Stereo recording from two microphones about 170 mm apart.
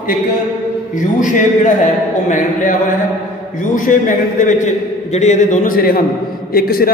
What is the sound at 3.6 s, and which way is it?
A man's voice, 50° left (ahead or behind).